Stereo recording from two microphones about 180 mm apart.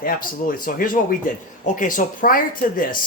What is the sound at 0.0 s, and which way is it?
A man's voice, 50° left (ahead or behind).